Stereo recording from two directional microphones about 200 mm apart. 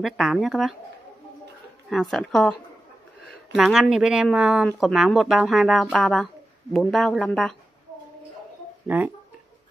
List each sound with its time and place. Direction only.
0.0 s speech: centre (ahead or behind)
1.9 s speech: centre (ahead or behind)
3.5 s speech: centre (ahead or behind)
8.8 s speech: 10° right (ahead or behind)